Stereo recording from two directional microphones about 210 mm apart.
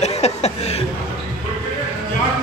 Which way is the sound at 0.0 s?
30° left (ahead or behind).